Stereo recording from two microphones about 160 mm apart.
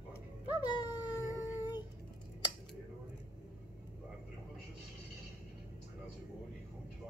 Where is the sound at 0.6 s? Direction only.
25° left (ahead or behind).